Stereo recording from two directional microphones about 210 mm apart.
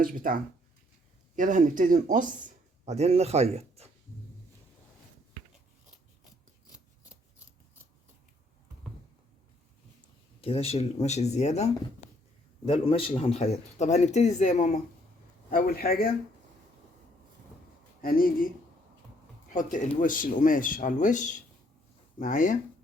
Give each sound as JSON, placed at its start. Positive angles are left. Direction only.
{"t": 0.0, "sound": "speech", "side_deg": -40}
{"t": 1.4, "sound": "speech", "side_deg": -35}
{"t": 10.4, "sound": "a man's voice", "side_deg": 30}
{"t": 18.0, "sound": "a man's voice", "side_deg": 45}
{"t": 19.5, "sound": "speech", "side_deg": 40}